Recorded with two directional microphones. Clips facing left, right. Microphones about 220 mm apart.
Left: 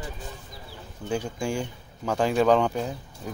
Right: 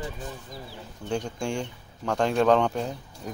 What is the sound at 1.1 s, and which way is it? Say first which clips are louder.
Speech: left 1 dB; 5° left (ahead or behind).